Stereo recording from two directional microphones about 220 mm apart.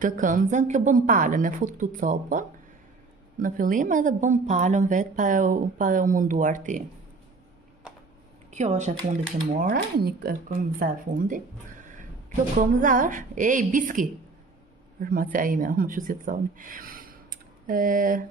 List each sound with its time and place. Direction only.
0.0 s speech: 35° right (ahead or behind)
8.5 s a man's voice: 30° right (ahead or behind)